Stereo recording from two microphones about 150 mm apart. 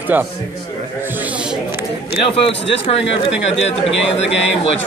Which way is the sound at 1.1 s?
10° right (ahead or behind).